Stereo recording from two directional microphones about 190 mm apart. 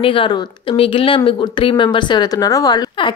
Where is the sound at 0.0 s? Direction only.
25° left (ahead or behind).